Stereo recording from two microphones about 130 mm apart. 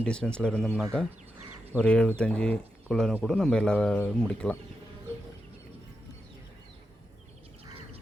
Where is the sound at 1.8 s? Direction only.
10° left (ahead or behind).